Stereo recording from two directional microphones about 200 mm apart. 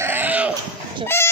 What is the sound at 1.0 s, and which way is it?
Chicken, 10° left (ahead or behind).